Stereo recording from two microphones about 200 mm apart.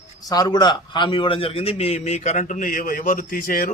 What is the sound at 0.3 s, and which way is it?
A man's voice, 20° left (ahead or behind).